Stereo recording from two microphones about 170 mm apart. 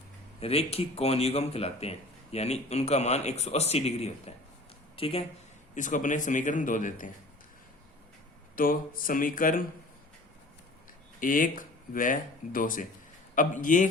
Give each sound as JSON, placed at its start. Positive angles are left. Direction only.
{"t": 0.3, "sound": "speech", "side_deg": 35}
{"t": 5.7, "sound": "a man's voice", "side_deg": 50}
{"t": 8.5, "sound": "speech", "side_deg": 55}
{"t": 11.2, "sound": "a man's voice", "side_deg": 55}